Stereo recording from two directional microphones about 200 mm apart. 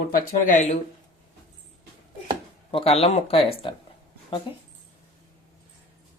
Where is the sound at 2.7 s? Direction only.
30° left (ahead or behind).